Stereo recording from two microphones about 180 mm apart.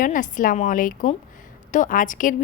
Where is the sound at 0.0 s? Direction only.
45° left (ahead or behind).